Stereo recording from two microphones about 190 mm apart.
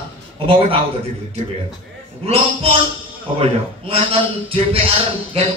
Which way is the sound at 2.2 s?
30° right (ahead or behind).